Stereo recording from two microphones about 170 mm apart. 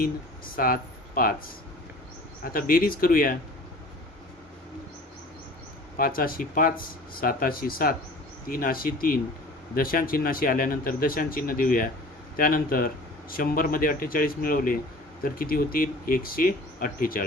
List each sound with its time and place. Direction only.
0.5 s speech: 55° left (ahead or behind)
2.4 s speech: 55° left (ahead or behind)
6.0 s speech: 55° left (ahead or behind)